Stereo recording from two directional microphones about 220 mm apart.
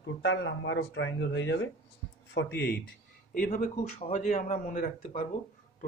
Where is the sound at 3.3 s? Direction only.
40° left (ahead or behind).